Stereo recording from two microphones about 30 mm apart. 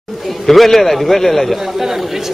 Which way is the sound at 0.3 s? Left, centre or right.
Centre.